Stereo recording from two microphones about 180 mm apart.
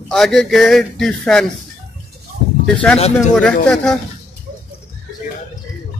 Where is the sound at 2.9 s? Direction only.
35° left (ahead or behind).